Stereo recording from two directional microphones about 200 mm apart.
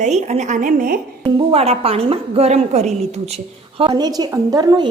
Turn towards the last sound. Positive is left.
turn(degrees=-20)  # may be behind; listen again after turning